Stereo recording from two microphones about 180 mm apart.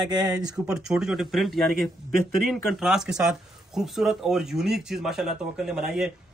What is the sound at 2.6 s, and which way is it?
Speech, centre (ahead or behind).